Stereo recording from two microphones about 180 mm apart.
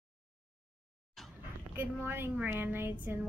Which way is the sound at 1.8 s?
15° right (ahead or behind).